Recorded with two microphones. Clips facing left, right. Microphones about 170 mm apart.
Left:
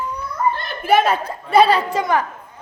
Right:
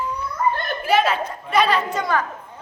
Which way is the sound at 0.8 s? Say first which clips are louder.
Left 3 dB; 50° left (ahead or behind).